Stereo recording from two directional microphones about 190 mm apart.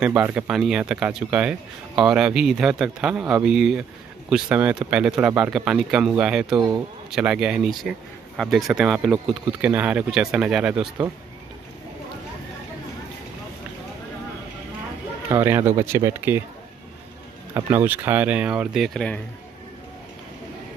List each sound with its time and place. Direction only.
0.0 s speech: 5° right (ahead or behind)
6.5 s speech: 20° right (ahead or behind)
7.1 s speech: 5° right (ahead or behind)
15.2 s speech: 10° right (ahead or behind)
17.6 s speech: 10° right (ahead or behind)